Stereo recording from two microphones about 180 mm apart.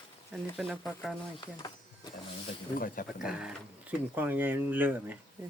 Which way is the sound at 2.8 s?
50° left (ahead or behind).